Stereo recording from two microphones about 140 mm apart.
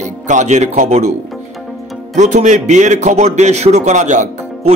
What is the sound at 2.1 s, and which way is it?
Speech, 60° right (ahead or behind).